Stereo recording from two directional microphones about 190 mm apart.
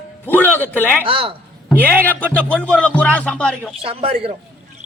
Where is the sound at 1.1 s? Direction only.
30° right (ahead or behind).